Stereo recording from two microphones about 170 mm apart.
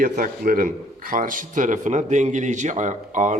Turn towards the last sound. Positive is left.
turn(degrees=-45)  # may be behind; listen again after turning